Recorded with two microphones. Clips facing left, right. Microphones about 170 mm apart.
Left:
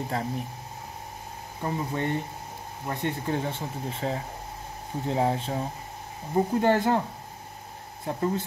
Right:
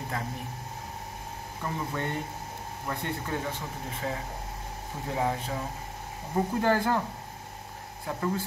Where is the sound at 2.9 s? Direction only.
30° left (ahead or behind).